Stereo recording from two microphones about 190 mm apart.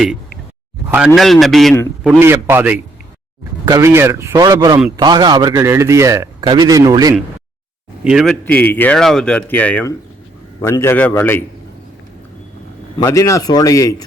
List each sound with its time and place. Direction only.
0.9 s a man's voice: 5° right (ahead or behind)
2.0 s a man's voice: 10° right (ahead or behind)
8.0 s speech: centre (ahead or behind)
13.0 s speech: 15° left (ahead or behind)